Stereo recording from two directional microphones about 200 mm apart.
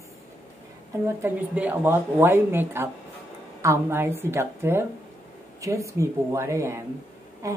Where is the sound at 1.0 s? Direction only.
10° right (ahead or behind).